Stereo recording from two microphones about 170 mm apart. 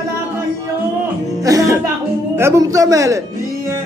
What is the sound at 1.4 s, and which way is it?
Speech, 20° right (ahead or behind).